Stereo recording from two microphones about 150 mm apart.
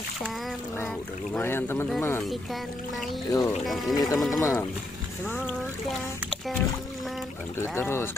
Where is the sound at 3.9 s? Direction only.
25° left (ahead or behind).